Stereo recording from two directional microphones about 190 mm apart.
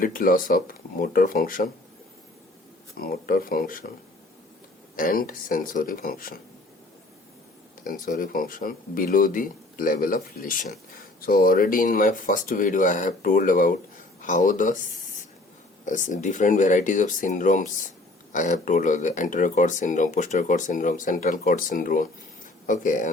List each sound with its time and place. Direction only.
0.0 s speech: 50° left (ahead or behind)
3.0 s speech: 50° left (ahead or behind)
4.9 s speech: 45° left (ahead or behind)
7.9 s speech: 50° left (ahead or behind)
15.9 s speech: 40° left (ahead or behind)